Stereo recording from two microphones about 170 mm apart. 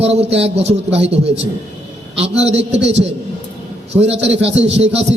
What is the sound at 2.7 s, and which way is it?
Speech, 90° right.